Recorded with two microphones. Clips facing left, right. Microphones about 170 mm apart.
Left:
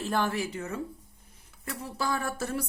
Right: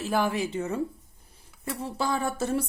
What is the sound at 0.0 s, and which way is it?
Speech, 10° right (ahead or behind).